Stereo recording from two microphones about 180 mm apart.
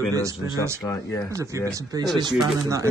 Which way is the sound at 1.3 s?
15° right (ahead or behind).